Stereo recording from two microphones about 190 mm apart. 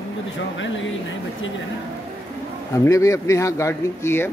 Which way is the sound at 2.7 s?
15° left (ahead or behind).